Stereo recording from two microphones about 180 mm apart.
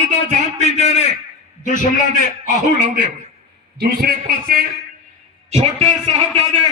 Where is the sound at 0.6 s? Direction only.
35° left (ahead or behind).